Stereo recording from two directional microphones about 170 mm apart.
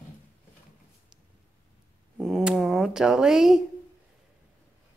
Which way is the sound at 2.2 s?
Centre (ahead or behind).